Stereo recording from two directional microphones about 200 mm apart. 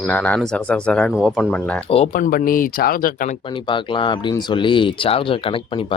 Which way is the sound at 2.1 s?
45° left (ahead or behind).